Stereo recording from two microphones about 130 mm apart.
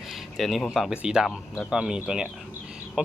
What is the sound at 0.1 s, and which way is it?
Speech, centre (ahead or behind).